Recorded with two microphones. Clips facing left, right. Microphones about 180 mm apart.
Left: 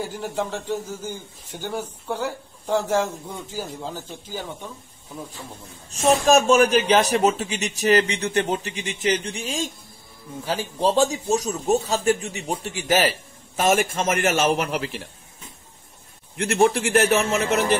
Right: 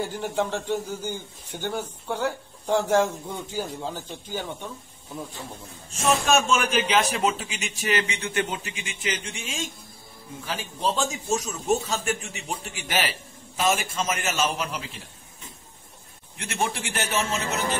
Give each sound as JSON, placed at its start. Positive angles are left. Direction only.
{"t": 0.0, "sound": "a man's voice", "side_deg": 0}
{"t": 6.2, "sound": "a man's voice", "side_deg": 40}
{"t": 16.3, "sound": "a man's voice", "side_deg": 65}